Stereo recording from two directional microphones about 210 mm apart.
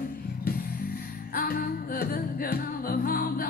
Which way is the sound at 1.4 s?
45° left (ahead or behind).